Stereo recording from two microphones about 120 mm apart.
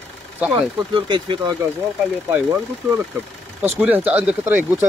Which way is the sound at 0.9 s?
40° right (ahead or behind).